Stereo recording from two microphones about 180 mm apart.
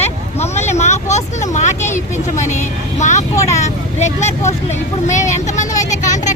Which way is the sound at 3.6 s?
40° left (ahead or behind).